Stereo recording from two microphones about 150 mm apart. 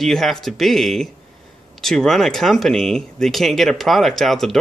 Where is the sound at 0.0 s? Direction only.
5° left (ahead or behind).